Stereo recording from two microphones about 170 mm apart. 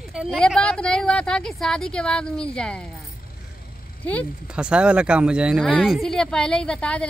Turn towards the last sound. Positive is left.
turn(degrees=5)  # may be behind; listen again after turning